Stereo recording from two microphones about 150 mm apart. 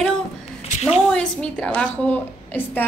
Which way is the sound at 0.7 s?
45° left (ahead or behind).